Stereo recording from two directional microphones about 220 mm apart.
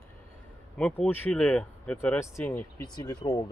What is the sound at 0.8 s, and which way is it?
Speech, 5° left (ahead or behind).